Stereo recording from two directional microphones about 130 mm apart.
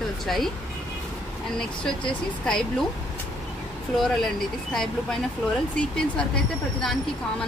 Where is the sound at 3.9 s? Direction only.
5° left (ahead or behind).